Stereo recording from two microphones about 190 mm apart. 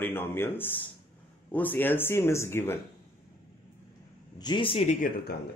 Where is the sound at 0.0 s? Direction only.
10° left (ahead or behind).